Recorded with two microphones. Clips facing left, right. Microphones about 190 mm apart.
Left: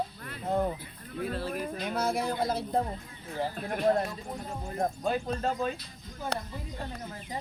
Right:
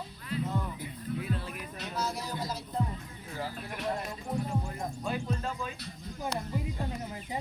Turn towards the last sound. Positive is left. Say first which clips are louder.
# left 1 dB
turn(degrees=60)  # may be behind; listen again after turning